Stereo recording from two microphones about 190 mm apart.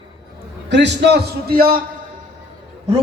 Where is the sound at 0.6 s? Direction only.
65° right (ahead or behind).